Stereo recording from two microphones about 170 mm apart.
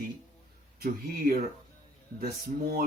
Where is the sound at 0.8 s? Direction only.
65° right (ahead or behind).